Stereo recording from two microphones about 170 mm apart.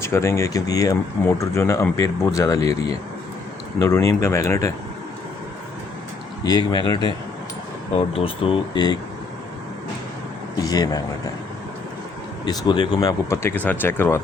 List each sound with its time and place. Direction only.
0.0 s speech: 15° left (ahead or behind)
6.4 s speech: 25° left (ahead or behind)
8.1 s speech: 30° left (ahead or behind)
10.6 s speech: 20° left (ahead or behind)
12.5 s speech: 30° left (ahead or behind)